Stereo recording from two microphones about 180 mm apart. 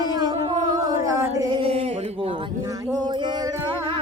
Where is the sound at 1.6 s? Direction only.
35° right (ahead or behind).